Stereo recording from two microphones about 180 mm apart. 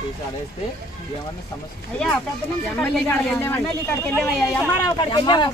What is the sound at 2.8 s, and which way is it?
Speech, 10° left (ahead or behind).